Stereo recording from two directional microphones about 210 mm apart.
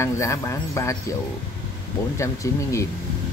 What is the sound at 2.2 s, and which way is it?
Speech, 15° left (ahead or behind).